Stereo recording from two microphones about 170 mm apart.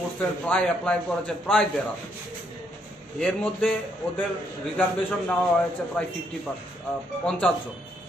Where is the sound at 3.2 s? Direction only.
5° left (ahead or behind).